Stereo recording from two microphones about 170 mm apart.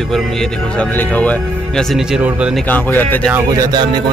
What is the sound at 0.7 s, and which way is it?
Speech, 10° left (ahead or behind).